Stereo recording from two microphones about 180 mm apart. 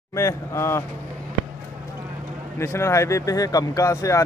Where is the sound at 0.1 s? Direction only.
15° left (ahead or behind).